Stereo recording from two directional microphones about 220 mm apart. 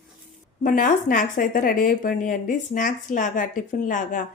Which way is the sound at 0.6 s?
35° left (ahead or behind).